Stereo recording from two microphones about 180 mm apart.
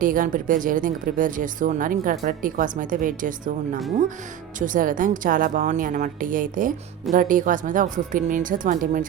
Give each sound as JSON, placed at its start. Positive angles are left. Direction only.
{"t": 0.0, "sound": "speech", "side_deg": -50}